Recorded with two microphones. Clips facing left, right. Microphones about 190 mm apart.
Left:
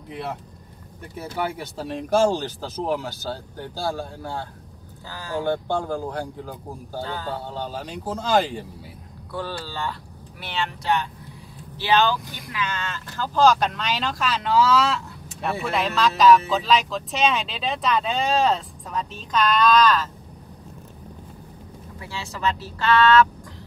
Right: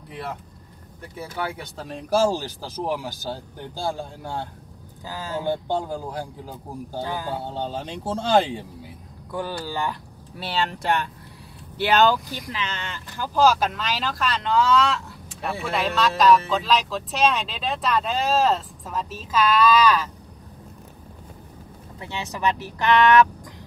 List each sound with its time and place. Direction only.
1.8 s speech: centre (ahead or behind); by 8.5 s 30° right (ahead or behind)
9.3 s speech: 15° right (ahead or behind)
10.3 s speech: 35° right (ahead or behind)
10.8 s speech: 55° right (ahead or behind)
12.5 s speech: 20° right (ahead or behind)
22.0 s speech: 20° right (ahead or behind)